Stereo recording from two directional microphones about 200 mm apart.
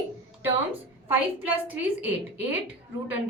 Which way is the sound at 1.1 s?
10° right (ahead or behind).